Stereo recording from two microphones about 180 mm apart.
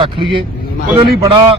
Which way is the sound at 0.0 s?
30° right (ahead or behind).